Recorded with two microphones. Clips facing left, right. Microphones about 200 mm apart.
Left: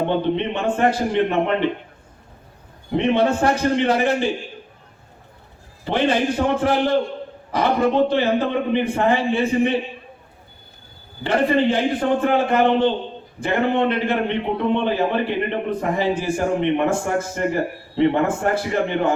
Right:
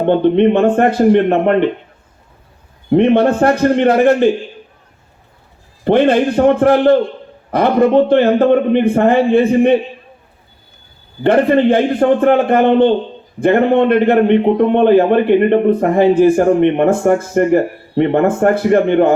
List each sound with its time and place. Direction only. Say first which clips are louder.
0.0 s a man's voice: right 10 dB; 55° right (ahead or behind)
2.9 s a man's voice: right 8 dB; 55° right (ahead or behind)
5.8 s a man's voice: right 8 dB; 55° right (ahead or behind)
11.2 s a man's voice: right 7 dB; 55° right (ahead or behind)